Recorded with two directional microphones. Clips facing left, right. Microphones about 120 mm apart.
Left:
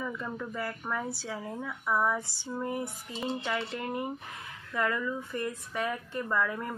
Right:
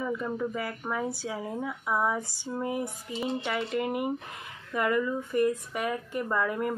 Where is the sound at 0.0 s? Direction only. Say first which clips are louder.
Right 5 dB; 15° right (ahead or behind).